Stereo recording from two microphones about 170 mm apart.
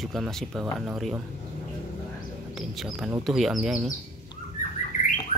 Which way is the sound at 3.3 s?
Centre (ahead or behind).